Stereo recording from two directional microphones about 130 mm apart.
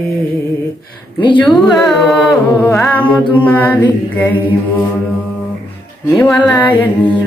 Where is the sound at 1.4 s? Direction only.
Centre (ahead or behind).